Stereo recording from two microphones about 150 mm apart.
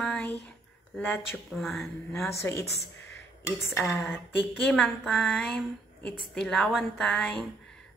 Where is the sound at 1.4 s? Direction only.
Centre (ahead or behind).